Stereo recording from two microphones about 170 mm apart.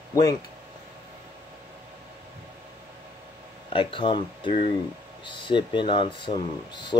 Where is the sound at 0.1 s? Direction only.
20° left (ahead or behind).